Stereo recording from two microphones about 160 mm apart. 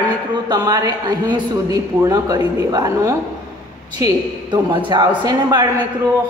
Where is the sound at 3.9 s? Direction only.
25° right (ahead or behind).